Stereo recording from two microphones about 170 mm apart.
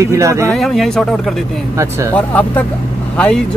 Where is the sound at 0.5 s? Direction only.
Centre (ahead or behind).